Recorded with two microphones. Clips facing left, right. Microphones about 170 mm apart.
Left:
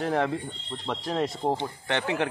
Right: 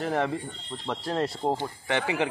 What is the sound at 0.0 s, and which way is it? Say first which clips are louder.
Speech: left 1 dB; centre (ahead or behind).